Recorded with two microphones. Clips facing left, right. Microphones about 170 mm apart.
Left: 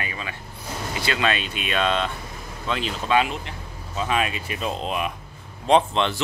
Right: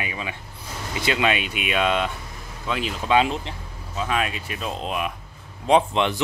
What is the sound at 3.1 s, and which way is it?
Speech, 30° right (ahead or behind).